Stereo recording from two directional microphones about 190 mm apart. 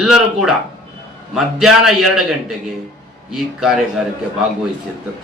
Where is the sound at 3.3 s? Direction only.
Centre (ahead or behind).